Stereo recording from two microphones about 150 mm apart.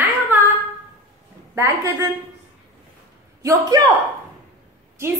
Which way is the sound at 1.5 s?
20° right (ahead or behind).